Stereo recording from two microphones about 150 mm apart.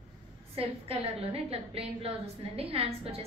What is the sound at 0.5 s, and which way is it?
A woman's voice, 40° right (ahead or behind).